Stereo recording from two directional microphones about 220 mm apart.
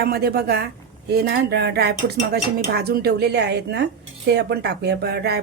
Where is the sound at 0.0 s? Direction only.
45° right (ahead or behind).